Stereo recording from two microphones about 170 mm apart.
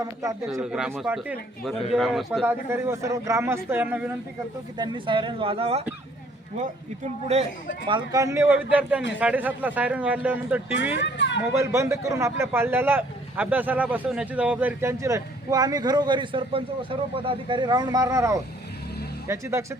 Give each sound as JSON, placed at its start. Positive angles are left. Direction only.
{"t": 0.0, "sound": "a man's voice", "side_deg": -20}
{"t": 0.6, "sound": "speech", "side_deg": -5}
{"t": 2.4, "sound": "a man's voice", "side_deg": -15}
{"t": 4.8, "sound": "speech", "side_deg": -30}
{"t": 7.9, "sound": "a man's voice", "side_deg": -25}
{"t": 10.9, "sound": "a sound", "side_deg": 90}
{"t": 11.5, "sound": "a man's voice", "side_deg": -15}